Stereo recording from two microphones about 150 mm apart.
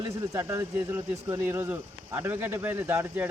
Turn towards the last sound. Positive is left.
turn(degrees=-15)  # may be behind; listen again after turning